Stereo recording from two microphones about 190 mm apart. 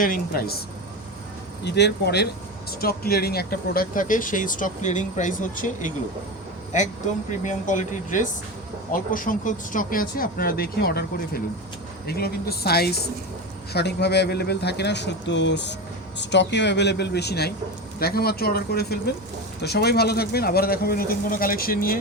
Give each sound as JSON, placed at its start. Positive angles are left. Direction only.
{"t": 0.0, "sound": "speech", "side_deg": 50}
{"t": 1.6, "sound": "speech", "side_deg": 60}